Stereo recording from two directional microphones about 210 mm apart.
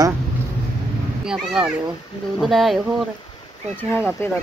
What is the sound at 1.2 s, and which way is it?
Speech, 5° right (ahead or behind).